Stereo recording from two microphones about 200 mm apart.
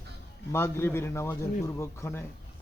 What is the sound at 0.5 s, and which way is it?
A man's voice, 10° left (ahead or behind).